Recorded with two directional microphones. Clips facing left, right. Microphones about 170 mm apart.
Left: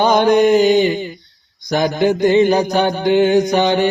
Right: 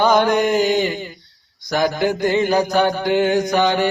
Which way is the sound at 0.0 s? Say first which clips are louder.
Left 3 dB; 20° left (ahead or behind).